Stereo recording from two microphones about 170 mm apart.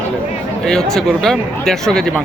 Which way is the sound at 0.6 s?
5° left (ahead or behind).